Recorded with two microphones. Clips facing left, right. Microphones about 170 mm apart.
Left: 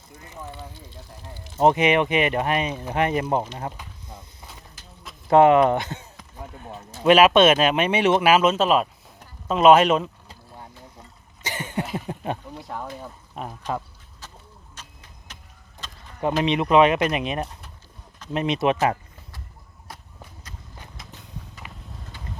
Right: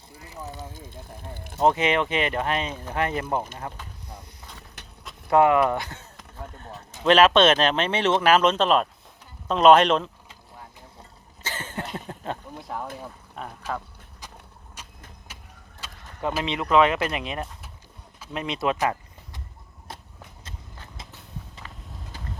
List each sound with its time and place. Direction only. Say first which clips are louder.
0.5 s speech: right 1 dB; 45° right (ahead or behind)
1.5 s speech: left 3 dB; 20° left (ahead or behind)
5.3 s speech: left 4 dB; 25° left (ahead or behind)
6.3 s speech: left 2 dB; 10° left (ahead or behind)
11.4 s a sound: left 4 dB; 15° left (ahead or behind)
12.5 s speech: even; centre (ahead or behind)
13.4 s speech: left 3 dB; 15° left (ahead or behind)
14.8 s vehicle: right 3 dB; 10° right (ahead or behind)
15.8 s a sound: even; 10° right (ahead or behind)
16.4 s speech: left 3 dB; 20° left (ahead or behind)
21.6 s vehicle: left 1 dB; 15° left (ahead or behind)